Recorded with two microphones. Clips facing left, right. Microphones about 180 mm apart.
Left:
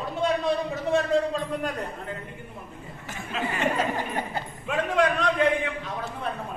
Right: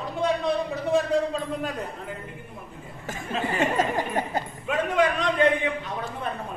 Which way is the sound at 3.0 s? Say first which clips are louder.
Right 2 dB; 45° right (ahead or behind).